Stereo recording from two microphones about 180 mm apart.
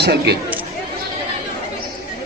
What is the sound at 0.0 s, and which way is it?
Speech, 65° right (ahead or behind).